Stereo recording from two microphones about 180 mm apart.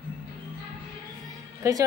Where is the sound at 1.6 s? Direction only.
15° right (ahead or behind).